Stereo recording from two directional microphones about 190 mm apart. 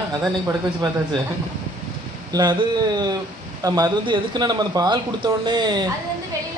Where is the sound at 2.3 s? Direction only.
20° right (ahead or behind).